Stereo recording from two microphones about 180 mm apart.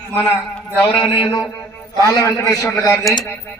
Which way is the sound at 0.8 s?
25° left (ahead or behind).